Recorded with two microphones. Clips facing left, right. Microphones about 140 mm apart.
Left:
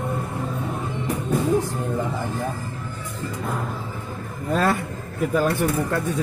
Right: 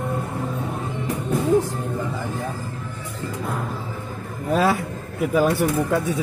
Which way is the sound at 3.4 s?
Centre (ahead or behind).